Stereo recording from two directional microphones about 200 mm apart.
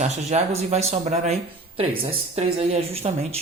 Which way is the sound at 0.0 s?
35° right (ahead or behind).